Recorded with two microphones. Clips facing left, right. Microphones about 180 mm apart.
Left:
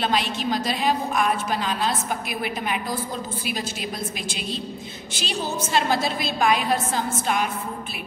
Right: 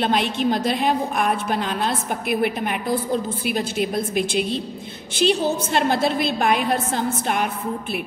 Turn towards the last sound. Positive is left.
turn(degrees=-55)  # may be behind; listen again after turning